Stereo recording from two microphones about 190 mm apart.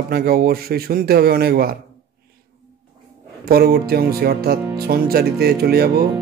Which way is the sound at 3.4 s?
55° right (ahead or behind).